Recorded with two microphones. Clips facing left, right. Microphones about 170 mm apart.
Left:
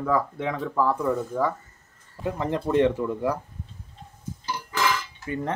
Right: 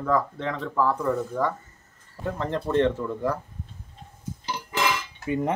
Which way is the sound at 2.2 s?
15° left (ahead or behind).